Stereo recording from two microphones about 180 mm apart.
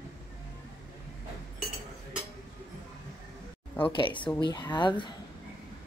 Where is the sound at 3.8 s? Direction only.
25° left (ahead or behind).